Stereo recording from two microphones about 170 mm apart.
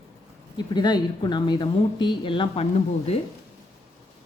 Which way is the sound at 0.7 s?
25° left (ahead or behind).